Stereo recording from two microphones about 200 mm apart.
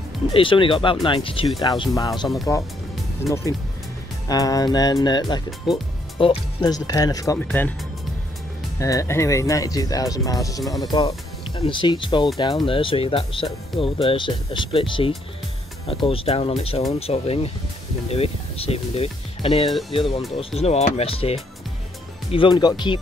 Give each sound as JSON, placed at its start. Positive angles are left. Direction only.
{"t": 0.3, "sound": "speech", "side_deg": 25}
{"t": 3.3, "sound": "speech", "side_deg": 15}
{"t": 7.3, "sound": "speech", "side_deg": 10}
{"t": 8.7, "sound": "speech", "side_deg": 15}
{"t": 19.6, "sound": "speech", "side_deg": 0}
{"t": 19.9, "sound": "speech", "side_deg": 25}